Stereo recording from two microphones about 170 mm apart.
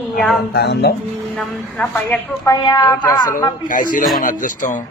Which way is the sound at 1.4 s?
10° left (ahead or behind).